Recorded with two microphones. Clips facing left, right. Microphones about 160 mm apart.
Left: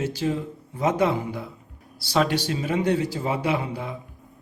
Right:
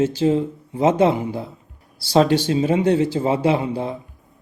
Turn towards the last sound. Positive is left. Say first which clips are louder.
# right 6 dB
turn(degrees=-30)  # may be behind; listen again after turning